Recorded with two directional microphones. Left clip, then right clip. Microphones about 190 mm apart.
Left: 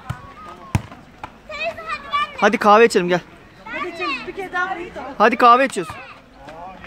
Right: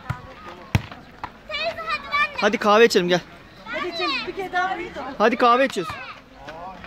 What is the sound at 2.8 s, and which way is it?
Speech, 15° left (ahead or behind).